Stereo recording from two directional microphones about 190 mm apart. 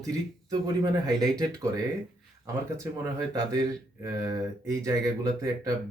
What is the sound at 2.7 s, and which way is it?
Speech, 15° right (ahead or behind).